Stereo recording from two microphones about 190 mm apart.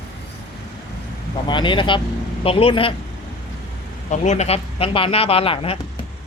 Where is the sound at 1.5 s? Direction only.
25° left (ahead or behind).